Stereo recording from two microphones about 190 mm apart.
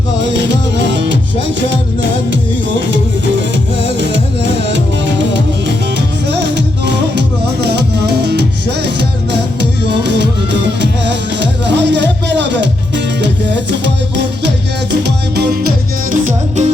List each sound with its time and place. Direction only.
0.2 s music: 65° right (ahead or behind)
13.8 s music: 65° right (ahead or behind)
16.2 s music: 35° right (ahead or behind)